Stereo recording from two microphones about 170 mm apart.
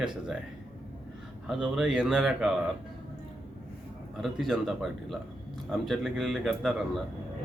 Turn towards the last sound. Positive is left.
turn(degrees=0)  # may be behind; listen again after turning